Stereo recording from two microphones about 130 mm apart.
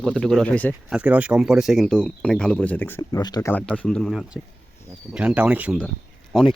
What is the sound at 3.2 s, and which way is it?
Speech, 30° left (ahead or behind).